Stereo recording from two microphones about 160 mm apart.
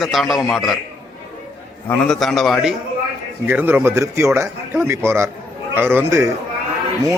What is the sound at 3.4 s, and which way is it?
A man's voice, 15° right (ahead or behind).